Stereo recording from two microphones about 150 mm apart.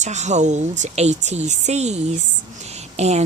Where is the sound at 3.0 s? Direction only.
45° right (ahead or behind).